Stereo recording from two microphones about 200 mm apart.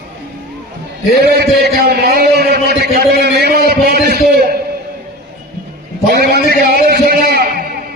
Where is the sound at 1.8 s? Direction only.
50° right (ahead or behind).